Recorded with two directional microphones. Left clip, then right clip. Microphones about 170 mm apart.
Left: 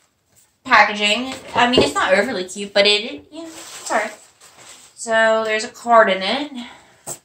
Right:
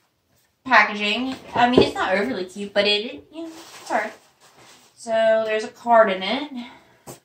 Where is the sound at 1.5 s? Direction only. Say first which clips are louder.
Left 2 dB; 20° left (ahead or behind).